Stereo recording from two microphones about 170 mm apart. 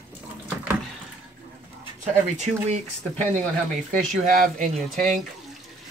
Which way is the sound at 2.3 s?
40° right (ahead or behind).